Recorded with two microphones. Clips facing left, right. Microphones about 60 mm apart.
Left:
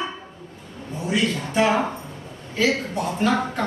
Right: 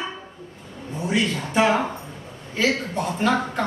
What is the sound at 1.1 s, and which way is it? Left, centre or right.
Speech, centre.